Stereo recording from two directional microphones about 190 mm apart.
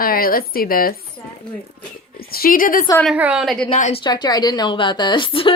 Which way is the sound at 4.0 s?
20° left (ahead or behind).